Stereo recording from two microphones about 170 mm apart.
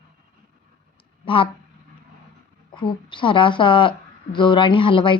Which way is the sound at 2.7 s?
30° left (ahead or behind).